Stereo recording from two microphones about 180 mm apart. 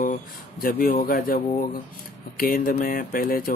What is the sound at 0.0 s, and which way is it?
Speech, 50° left (ahead or behind).